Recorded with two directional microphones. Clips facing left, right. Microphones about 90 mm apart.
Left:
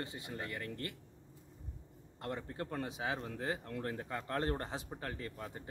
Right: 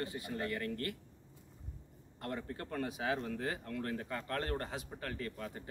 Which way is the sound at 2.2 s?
20° left (ahead or behind).